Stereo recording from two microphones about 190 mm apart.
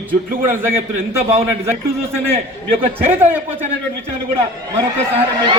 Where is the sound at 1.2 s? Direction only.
30° right (ahead or behind).